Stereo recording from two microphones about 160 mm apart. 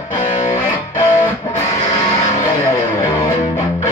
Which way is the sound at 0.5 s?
20° left (ahead or behind).